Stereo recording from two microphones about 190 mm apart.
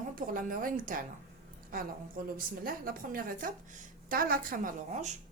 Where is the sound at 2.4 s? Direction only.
50° right (ahead or behind).